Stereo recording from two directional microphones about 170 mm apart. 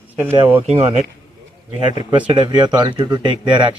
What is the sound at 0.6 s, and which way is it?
Speech, 40° right (ahead or behind).